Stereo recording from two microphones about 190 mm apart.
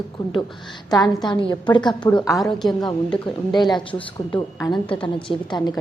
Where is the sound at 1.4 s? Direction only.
25° left (ahead or behind).